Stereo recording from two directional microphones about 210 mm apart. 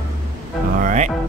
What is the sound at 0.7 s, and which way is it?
Music, 35° right (ahead or behind).